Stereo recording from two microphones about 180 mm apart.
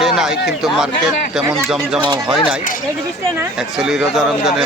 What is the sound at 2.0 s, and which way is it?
Speech, 25° right (ahead or behind).